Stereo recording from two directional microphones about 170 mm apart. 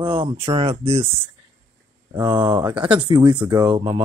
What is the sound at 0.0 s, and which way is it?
Speech, 30° right (ahead or behind).